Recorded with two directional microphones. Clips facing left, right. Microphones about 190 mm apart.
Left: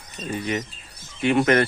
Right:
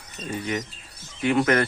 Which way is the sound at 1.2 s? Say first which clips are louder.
Left 2 dB; 25° left (ahead or behind).